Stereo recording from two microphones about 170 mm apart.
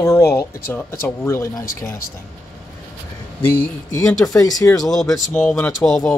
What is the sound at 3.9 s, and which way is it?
Speech, 20° left (ahead or behind).